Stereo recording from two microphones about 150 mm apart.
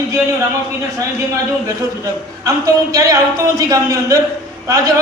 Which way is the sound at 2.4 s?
20° right (ahead or behind).